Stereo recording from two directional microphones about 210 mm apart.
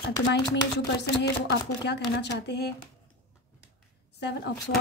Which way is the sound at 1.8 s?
55° left (ahead or behind).